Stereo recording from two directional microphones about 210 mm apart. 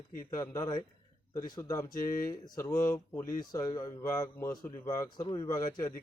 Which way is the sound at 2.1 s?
40° left (ahead or behind).